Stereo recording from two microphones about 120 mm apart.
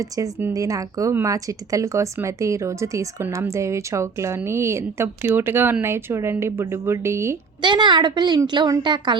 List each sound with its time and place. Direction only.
0.0 s speech: 25° right (ahead or behind)
7.6 s a woman's voice: 40° right (ahead or behind)